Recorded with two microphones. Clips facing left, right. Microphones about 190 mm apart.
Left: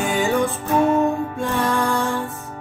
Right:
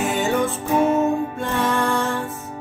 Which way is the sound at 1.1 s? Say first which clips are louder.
Right 2 dB; 20° right (ahead or behind).